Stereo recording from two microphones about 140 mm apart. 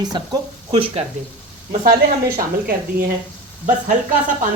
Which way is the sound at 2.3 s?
90° right.